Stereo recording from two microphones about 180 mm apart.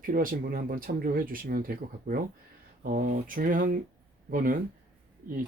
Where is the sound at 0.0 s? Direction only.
50° right (ahead or behind).